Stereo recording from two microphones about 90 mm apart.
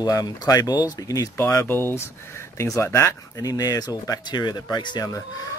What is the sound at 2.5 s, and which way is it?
Speech, 35° left (ahead or behind).